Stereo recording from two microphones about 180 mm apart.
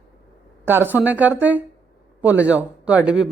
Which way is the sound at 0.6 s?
10° right (ahead or behind).